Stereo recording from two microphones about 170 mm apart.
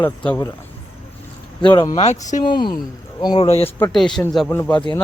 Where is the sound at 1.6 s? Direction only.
30° left (ahead or behind).